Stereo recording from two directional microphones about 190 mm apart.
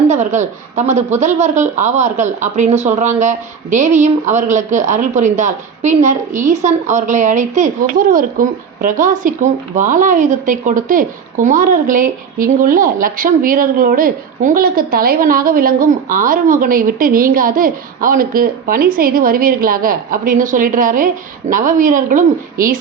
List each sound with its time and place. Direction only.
0.1 s a woman's voice: 40° right (ahead or behind)